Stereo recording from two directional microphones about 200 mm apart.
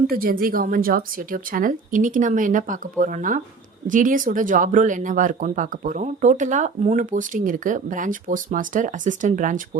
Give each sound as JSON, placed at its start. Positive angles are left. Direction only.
{"t": 0.1, "sound": "a woman's voice", "side_deg": -45}